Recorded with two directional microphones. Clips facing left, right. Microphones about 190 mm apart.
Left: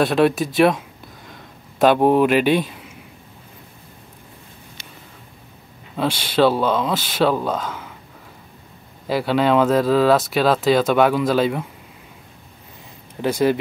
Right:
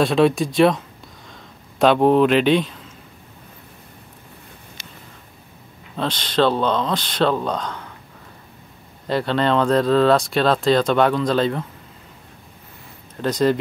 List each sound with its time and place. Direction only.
0.0 s speech: centre (ahead or behind)
5.9 s speech: 10° left (ahead or behind)
9.0 s speech: 5° left (ahead or behind)
13.1 s speech: 10° left (ahead or behind)